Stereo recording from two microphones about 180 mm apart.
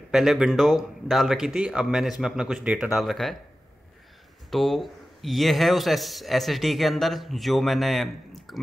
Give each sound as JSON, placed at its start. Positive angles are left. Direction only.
{"t": 0.1, "sound": "speech", "side_deg": 0}
{"t": 4.5, "sound": "speech", "side_deg": 0}